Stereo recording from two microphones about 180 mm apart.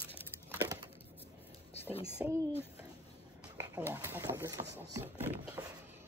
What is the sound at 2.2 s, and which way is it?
Speech, 10° right (ahead or behind).